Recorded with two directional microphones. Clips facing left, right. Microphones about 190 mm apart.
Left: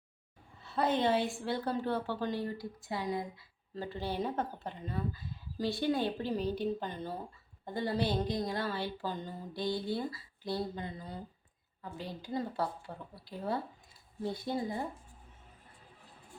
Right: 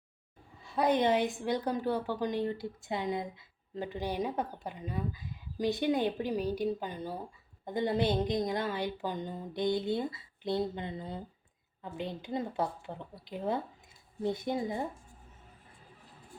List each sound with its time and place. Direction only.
0.6 s a woman's voice: 15° right (ahead or behind)